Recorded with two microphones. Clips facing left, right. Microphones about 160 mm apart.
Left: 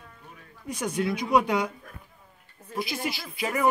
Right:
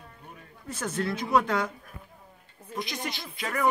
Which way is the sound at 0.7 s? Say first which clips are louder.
Left 3 dB; 15° left (ahead or behind).